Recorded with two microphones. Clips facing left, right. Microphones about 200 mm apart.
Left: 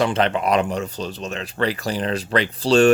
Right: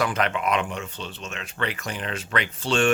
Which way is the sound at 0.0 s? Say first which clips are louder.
Left 5 dB; 30° left (ahead or behind).